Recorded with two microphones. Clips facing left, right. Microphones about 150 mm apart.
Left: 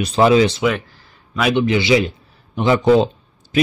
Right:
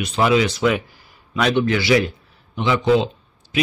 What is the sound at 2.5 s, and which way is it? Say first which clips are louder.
Speech: left 4 dB; 45° left (ahead or behind).